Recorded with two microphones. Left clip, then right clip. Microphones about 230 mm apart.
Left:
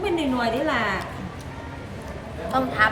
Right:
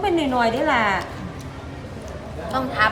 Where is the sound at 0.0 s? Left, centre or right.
Right.